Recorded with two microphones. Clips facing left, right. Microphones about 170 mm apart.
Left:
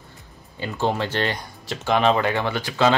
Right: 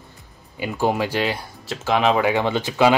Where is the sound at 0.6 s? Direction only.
10° right (ahead or behind).